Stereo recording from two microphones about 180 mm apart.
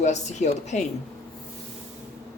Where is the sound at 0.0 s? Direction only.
40° left (ahead or behind).